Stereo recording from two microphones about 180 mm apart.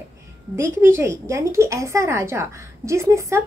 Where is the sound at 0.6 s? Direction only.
15° right (ahead or behind).